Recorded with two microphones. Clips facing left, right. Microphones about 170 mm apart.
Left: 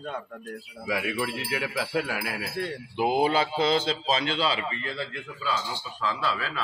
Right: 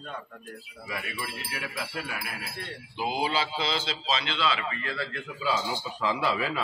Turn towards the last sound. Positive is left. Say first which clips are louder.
# right 2 dB
turn(degrees=-15)  # may be behind; listen again after turning